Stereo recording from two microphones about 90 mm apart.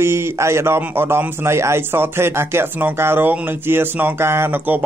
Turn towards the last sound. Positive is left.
turn(degrees=-25)  # may be behind; listen again after turning